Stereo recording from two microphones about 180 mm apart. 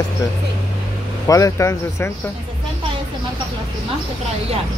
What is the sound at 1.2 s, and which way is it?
Speech, 20° left (ahead or behind).